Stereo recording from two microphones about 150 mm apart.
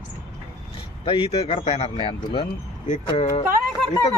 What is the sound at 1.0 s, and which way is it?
Speech, 35° left (ahead or behind).